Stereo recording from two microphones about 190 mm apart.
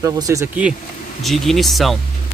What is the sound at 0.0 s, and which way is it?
Speech, 15° right (ahead or behind).